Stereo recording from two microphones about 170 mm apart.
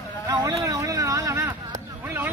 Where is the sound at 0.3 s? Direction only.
20° right (ahead or behind).